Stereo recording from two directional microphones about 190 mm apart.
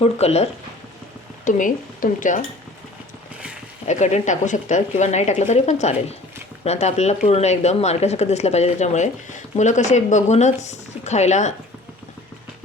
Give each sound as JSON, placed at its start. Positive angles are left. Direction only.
{"t": 0.0, "sound": "a woman's voice", "side_deg": 35}
{"t": 1.5, "sound": "speech", "side_deg": 45}
{"t": 3.8, "sound": "a woman's voice", "side_deg": 40}